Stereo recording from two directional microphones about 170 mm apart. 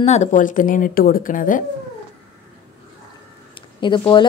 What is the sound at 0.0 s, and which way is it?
Speech, 40° left (ahead or behind).